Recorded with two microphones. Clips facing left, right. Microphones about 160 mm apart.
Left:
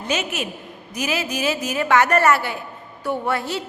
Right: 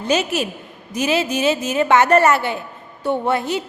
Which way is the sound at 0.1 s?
35° right (ahead or behind).